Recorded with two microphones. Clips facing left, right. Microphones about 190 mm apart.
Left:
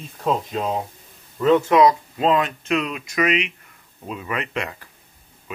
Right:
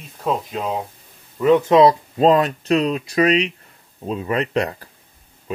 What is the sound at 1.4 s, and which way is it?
Speech, 15° right (ahead or behind).